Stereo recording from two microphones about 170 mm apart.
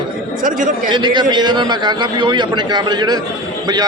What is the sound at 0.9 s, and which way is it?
Speech, 25° right (ahead or behind).